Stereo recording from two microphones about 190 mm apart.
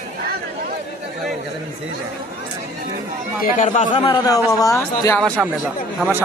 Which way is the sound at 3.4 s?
40° left (ahead or behind).